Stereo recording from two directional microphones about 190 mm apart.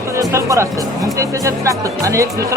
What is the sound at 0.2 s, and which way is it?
Music, 15° right (ahead or behind).